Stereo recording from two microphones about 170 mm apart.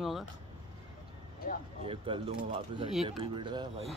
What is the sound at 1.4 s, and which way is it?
Speech, 60° left (ahead or behind).